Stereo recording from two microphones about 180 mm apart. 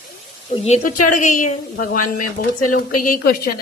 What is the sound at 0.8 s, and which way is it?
Speech, 45° left (ahead or behind).